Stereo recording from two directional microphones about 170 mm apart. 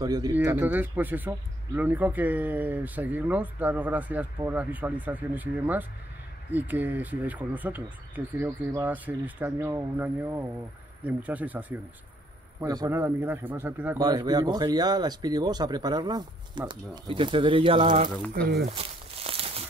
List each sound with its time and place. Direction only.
0.0 s speech: 20° right (ahead or behind)
0.3 s speech: 10° right (ahead or behind)
12.5 s speech: 20° right (ahead or behind)
14.0 s speech: 25° right (ahead or behind)
18.7 s a sound: 35° right (ahead or behind)